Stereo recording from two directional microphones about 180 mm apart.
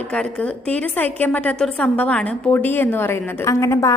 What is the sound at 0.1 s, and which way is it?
A woman's voice, 5° left (ahead or behind).